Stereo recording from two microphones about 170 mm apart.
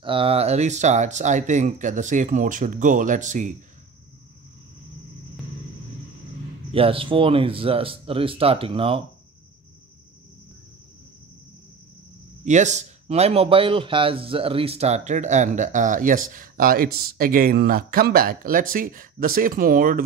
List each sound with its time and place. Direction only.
0.0 s speech: 30° right (ahead or behind)
6.7 s speech: 35° right (ahead or behind)
12.4 s speech: 45° right (ahead or behind)